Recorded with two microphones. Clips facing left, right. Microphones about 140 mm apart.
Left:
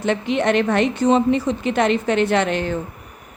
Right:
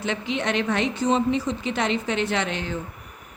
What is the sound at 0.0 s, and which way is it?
A woman's voice, 55° left (ahead or behind).